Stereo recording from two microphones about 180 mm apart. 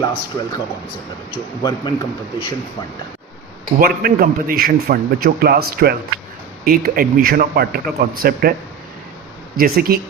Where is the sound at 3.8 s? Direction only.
55° right (ahead or behind).